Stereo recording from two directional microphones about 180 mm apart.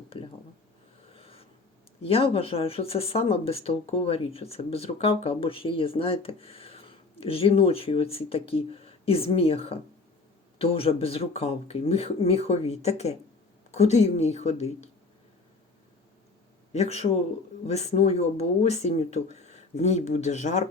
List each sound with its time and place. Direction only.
1.1 s writing: 30° left (ahead or behind)
2.0 s speech: 30° left (ahead or behind)
16.7 s speech: 35° left (ahead or behind)